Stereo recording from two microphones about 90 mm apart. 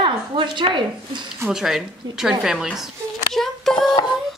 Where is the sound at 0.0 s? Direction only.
70° right (ahead or behind).